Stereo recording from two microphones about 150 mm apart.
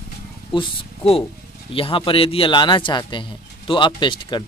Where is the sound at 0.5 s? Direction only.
35° left (ahead or behind).